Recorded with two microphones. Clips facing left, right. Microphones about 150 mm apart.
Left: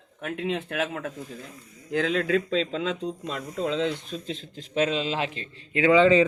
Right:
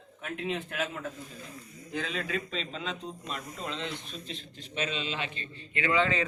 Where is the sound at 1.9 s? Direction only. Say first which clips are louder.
Left 10 dB; 90° left.